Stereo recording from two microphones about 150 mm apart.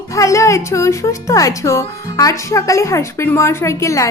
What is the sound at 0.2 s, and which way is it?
A woman's voice, 20° left (ahead or behind).